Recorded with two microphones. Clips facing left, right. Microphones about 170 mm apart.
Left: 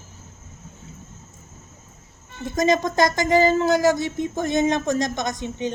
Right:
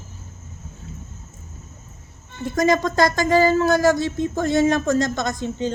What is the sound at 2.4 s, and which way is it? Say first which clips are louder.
Speech: right 1 dB; 20° left (ahead or behind).